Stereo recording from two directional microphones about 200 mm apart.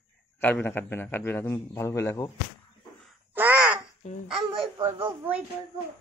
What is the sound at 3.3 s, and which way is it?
Crow, 10° right (ahead or behind).